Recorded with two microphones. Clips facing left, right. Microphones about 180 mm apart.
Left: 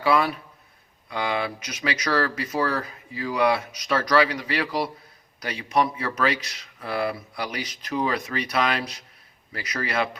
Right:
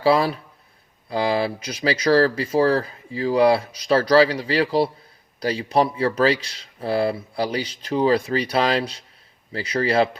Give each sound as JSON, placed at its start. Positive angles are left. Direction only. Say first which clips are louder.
{"t": 0.0, "sound": "speech", "louder": "right 4 dB", "side_deg": -30}